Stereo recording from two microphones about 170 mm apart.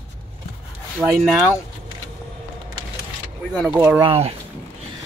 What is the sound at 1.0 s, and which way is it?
Speech, 5° left (ahead or behind).